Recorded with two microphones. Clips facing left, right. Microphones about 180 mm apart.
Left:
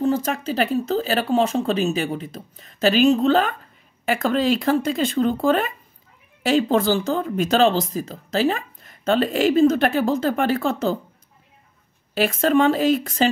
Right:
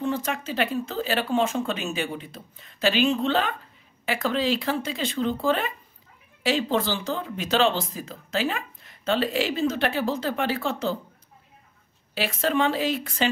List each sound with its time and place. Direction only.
0.0 s speech: 40° left (ahead or behind)
12.1 s speech: 45° left (ahead or behind)